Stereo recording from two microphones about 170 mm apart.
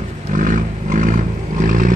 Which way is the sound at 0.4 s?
50° right (ahead or behind).